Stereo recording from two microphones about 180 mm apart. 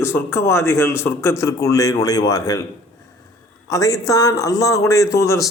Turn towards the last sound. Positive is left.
turn(degrees=15)  # may be behind; listen again after turning